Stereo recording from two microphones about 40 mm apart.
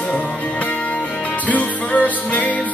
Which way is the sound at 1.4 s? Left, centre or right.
Left.